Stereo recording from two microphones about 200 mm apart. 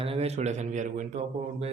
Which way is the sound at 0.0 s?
30° right (ahead or behind).